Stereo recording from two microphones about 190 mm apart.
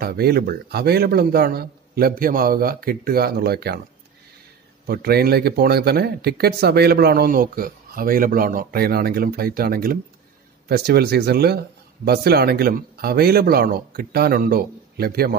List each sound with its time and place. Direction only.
0.0 s speech: 55° right (ahead or behind)
4.8 s speech: 55° right (ahead or behind)